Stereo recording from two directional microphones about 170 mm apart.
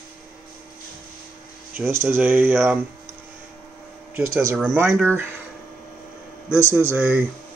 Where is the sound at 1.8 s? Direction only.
15° right (ahead or behind).